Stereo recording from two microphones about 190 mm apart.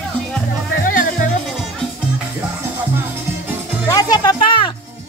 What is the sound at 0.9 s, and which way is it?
Music, 45° left (ahead or behind).